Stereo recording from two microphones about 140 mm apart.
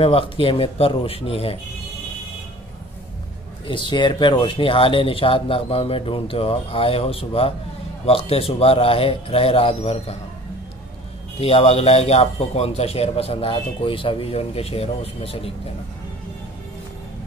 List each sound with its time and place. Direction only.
0.0 s a man's voice: 40° left (ahead or behind)
3.6 s a man's voice: 35° left (ahead or behind)
11.3 s a man's voice: 40° left (ahead or behind)